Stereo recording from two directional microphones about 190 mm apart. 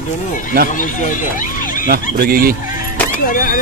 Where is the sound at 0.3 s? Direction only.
45° left (ahead or behind).